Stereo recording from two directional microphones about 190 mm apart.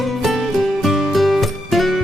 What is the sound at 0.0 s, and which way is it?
Music, centre (ahead or behind).